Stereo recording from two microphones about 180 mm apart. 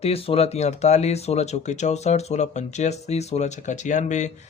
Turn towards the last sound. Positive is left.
turn(degrees=40)  # may be behind; listen again after turning